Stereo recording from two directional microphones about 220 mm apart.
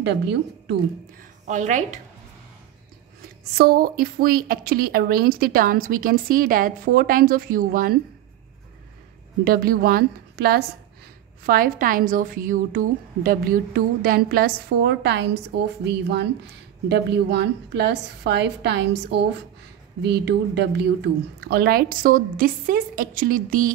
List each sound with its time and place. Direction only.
0.0 s a woman's voice: 50° right (ahead or behind)
1.5 s a woman's voice: 35° right (ahead or behind)
3.5 s a woman's voice: 45° right (ahead or behind)
9.4 s a woman's voice: 40° right (ahead or behind)